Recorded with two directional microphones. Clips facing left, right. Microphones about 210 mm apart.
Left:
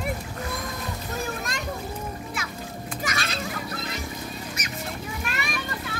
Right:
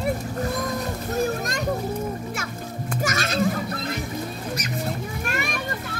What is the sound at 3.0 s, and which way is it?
Children playing, 45° right (ahead or behind).